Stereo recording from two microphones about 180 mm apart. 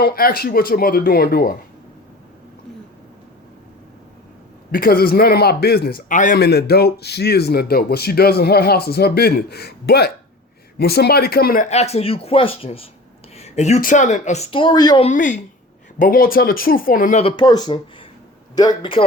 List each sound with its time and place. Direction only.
0.0 s speech: 55° left (ahead or behind)
4.7 s speech: 55° left (ahead or behind)
6.4 s speech: 60° left (ahead or behind)
11.7 s speech: 35° left (ahead or behind)
14.5 s speech: 25° left (ahead or behind)
15.0 s speech: 45° left (ahead or behind)
17.2 s speech: 30° left (ahead or behind)